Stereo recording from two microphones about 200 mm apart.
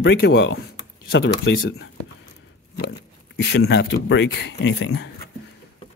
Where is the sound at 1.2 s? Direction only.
90° left.